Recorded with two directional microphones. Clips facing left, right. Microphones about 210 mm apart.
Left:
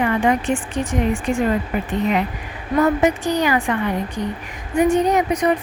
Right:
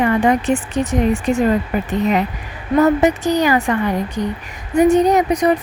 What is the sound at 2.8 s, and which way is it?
Speech, 40° right (ahead or behind).